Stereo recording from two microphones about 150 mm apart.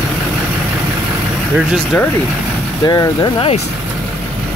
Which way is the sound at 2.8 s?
25° left (ahead or behind).